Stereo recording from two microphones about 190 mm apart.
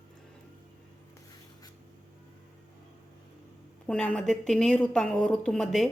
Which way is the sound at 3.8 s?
5° left (ahead or behind).